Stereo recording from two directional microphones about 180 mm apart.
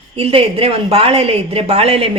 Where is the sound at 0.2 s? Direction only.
35° right (ahead or behind).